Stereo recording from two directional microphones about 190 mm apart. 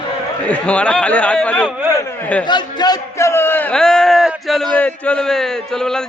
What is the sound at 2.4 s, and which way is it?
A man's voice, 25° left (ahead or behind).